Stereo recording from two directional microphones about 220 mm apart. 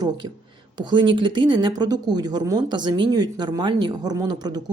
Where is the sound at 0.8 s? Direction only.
20° right (ahead or behind).